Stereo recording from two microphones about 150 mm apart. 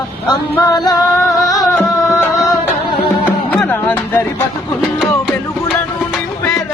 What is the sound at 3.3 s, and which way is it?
Music, 10° left (ahead or behind).